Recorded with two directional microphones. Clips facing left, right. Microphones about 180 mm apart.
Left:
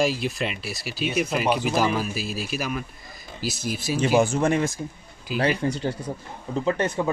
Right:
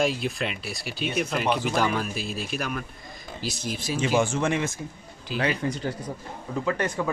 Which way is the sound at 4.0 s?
40° left (ahead or behind).